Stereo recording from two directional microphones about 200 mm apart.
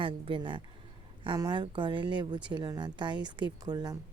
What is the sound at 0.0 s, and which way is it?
Speech, 25° right (ahead or behind).